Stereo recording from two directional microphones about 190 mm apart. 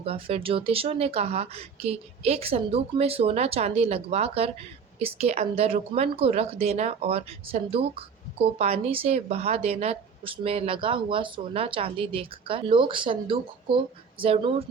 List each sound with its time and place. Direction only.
0.0 s a woman's voice: 30° right (ahead or behind)